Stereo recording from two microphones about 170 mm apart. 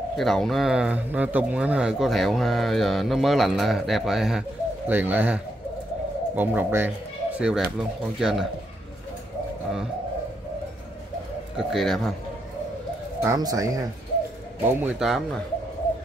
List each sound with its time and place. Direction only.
0.2 s speech: centre (ahead or behind)
11.5 s speech: centre (ahead or behind)
13.2 s speech: 20° right (ahead or behind)
14.7 s speech: 5° right (ahead or behind)